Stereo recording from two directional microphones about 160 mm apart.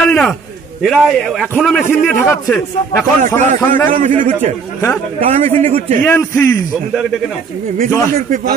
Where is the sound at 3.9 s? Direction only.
50° right (ahead or behind).